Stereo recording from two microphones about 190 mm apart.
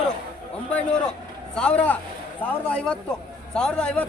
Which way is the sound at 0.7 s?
5° left (ahead or behind).